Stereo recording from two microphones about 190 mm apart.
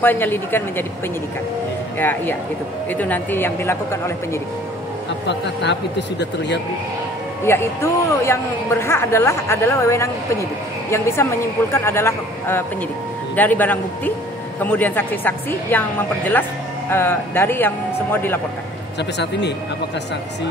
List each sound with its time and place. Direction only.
0.0 s a man's voice: 10° left (ahead or behind)
2.0 s a man's voice: 10° left (ahead or behind)
5.2 s speech: 65° left (ahead or behind)
7.4 s a man's voice: 15° left (ahead or behind)
16.9 s a man's voice: 10° left (ahead or behind)
18.9 s speech: 65° left (ahead or behind)